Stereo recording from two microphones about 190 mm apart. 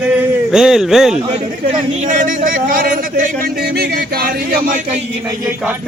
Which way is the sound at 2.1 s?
45° right (ahead or behind).